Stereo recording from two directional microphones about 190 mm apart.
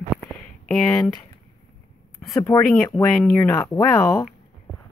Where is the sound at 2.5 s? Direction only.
20° left (ahead or behind).